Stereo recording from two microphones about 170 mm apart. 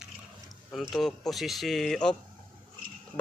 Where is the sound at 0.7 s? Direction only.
Centre (ahead or behind).